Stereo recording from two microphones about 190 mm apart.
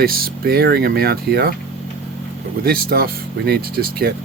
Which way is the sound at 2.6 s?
50° right (ahead or behind).